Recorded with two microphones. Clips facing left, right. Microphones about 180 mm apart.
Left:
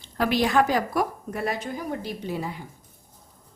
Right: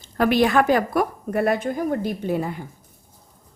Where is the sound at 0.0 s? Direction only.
55° right (ahead or behind).